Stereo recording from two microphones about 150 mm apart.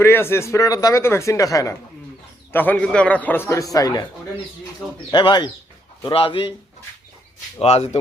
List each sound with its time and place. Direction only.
0.0 s a man's voice: 15° left (ahead or behind)
5.1 s speech: 30° left (ahead or behind)
7.6 s speech: 45° left (ahead or behind)